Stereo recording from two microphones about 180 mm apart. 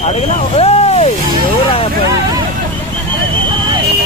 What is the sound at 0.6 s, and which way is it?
Speech, 35° left (ahead or behind).